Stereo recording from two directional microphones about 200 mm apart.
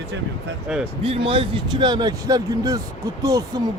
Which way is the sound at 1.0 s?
25° right (ahead or behind).